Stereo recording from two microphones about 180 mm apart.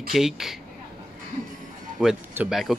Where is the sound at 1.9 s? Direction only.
5° right (ahead or behind).